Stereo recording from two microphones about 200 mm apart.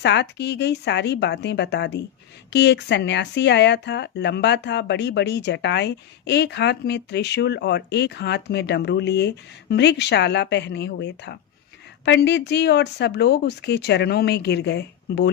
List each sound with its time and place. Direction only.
0.0 s speech: 60° left (ahead or behind)